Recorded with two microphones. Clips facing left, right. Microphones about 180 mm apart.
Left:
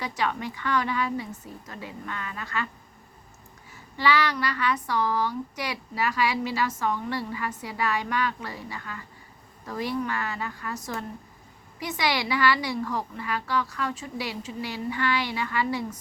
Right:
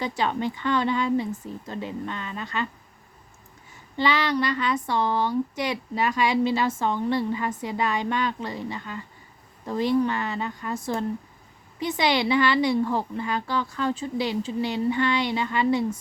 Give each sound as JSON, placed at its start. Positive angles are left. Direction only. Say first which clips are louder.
{"t": 0.0, "sound": "speech", "louder": "right 4 dB", "side_deg": -30}
{"t": 3.9, "sound": "speech", "louder": "right 1 dB", "side_deg": -25}